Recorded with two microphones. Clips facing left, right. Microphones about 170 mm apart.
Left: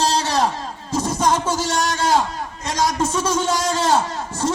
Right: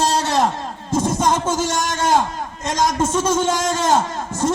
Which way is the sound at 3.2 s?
50° right (ahead or behind).